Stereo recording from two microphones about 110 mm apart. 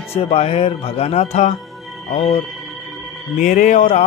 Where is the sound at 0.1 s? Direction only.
70° left (ahead or behind).